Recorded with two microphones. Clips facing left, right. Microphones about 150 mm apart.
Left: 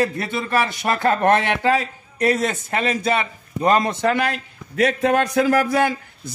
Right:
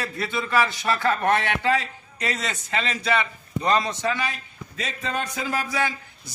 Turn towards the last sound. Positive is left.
turn(degrees=55)  # may be behind; listen again after turning